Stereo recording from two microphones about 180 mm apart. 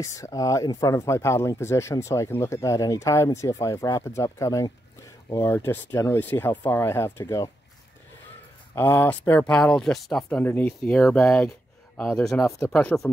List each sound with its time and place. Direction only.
0.0 s speech: 15° left (ahead or behind)
8.7 s speech: 10° left (ahead or behind)